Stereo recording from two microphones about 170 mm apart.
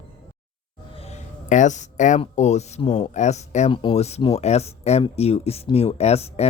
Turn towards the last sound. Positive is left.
turn(degrees=40)  # may be behind; listen again after turning